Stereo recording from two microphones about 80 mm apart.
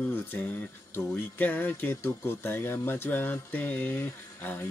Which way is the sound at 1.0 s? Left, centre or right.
Left.